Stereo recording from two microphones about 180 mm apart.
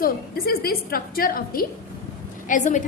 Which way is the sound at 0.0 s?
55° left (ahead or behind).